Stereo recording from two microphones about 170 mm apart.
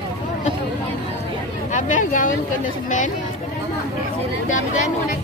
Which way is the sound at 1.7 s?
50° left (ahead or behind).